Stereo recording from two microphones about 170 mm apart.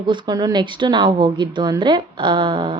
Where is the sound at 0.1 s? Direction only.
25° right (ahead or behind).